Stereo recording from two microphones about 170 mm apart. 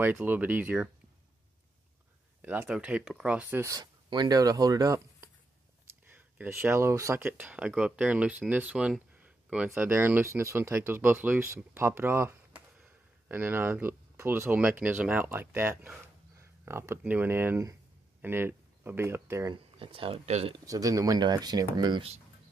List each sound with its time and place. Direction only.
0.0 s speech: 10° right (ahead or behind)
2.4 s speech: 10° right (ahead or behind)
19.5 s speech: 30° right (ahead or behind)
20.6 s speech: 20° right (ahead or behind)